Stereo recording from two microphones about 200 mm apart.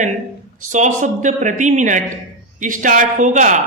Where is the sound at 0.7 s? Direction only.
40° right (ahead or behind).